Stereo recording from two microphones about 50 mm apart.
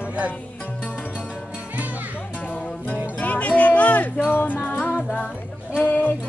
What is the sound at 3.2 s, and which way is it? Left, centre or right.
Music, left.